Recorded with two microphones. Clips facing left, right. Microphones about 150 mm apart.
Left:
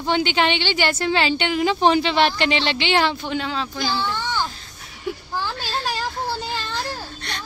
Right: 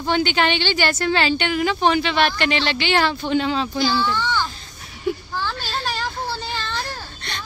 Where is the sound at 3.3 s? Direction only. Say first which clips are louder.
Right 5 dB; centre (ahead or behind).